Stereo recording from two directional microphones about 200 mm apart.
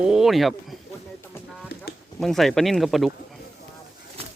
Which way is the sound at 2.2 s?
Centre (ahead or behind).